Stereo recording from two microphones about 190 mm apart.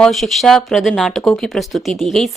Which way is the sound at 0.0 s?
Centre (ahead or behind).